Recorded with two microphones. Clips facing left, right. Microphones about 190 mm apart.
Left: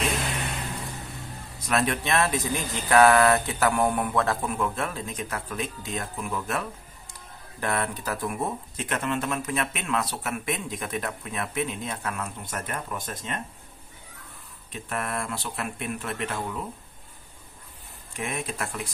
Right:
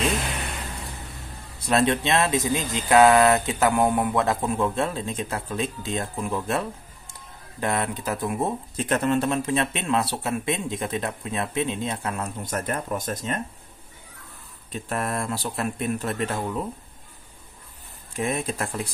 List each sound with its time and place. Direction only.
1.7 s speech: 25° right (ahead or behind)
8.7 s speech: 40° right (ahead or behind)
12.4 s speech: 40° right (ahead or behind)
14.7 s speech: 35° right (ahead or behind)
18.1 s speech: 35° right (ahead or behind)